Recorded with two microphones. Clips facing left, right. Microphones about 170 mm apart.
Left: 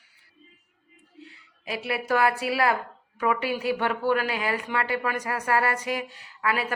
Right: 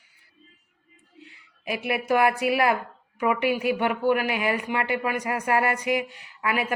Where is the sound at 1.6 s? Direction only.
20° right (ahead or behind).